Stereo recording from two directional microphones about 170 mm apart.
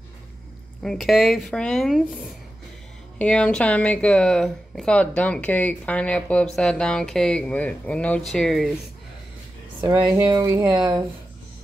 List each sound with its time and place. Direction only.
0.8 s speech: centre (ahead or behind)
9.8 s speech: 25° right (ahead or behind)